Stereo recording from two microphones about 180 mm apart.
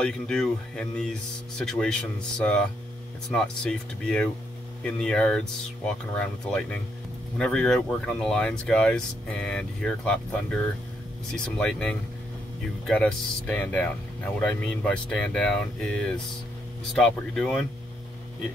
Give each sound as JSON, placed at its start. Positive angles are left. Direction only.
{"t": 0.0, "sound": "speech", "side_deg": 5}